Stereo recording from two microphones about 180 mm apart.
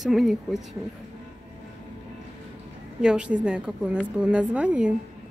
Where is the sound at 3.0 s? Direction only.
5° right (ahead or behind).